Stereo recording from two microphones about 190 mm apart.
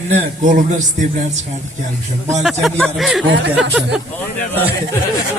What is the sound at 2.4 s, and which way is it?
Speech, centre (ahead or behind).